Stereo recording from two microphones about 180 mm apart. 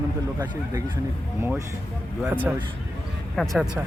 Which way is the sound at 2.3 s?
10° right (ahead or behind).